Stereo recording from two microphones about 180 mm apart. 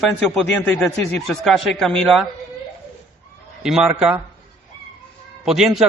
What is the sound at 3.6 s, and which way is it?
Speech, centre (ahead or behind).